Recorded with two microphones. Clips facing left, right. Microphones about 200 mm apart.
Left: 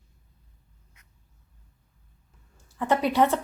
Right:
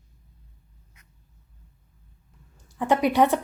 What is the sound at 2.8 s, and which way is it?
Speech, 15° right (ahead or behind).